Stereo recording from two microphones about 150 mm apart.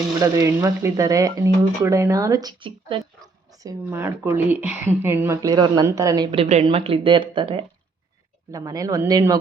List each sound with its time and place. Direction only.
0.2 s speech: 25° right (ahead or behind)
3.2 s a sound: 25° right (ahead or behind)
3.8 s speech: 15° right (ahead or behind)
6.3 s a woman's voice: 45° right (ahead or behind)
8.5 s speech: 25° right (ahead or behind)